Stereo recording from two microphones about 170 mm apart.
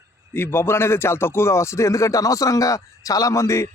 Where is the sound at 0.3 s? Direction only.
15° left (ahead or behind).